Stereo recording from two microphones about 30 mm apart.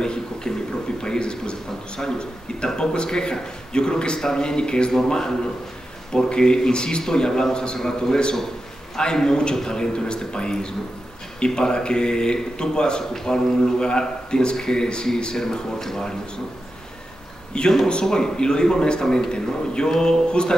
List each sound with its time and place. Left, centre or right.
0.0 s a sound: left
1.0 s a man's voice: left
13.1 s a man's voice: centre
17.5 s a man's voice: left